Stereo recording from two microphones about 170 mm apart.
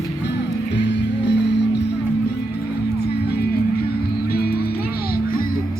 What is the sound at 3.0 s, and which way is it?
Music, 70° left (ahead or behind).